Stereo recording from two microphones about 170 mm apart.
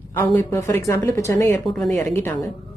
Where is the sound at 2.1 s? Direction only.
15° left (ahead or behind).